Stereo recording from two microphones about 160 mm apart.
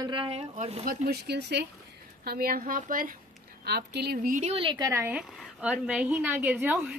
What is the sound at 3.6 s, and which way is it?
Speech, 90° right.